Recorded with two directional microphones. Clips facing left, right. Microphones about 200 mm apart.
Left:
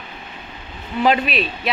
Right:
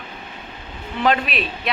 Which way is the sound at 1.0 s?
5° left (ahead or behind).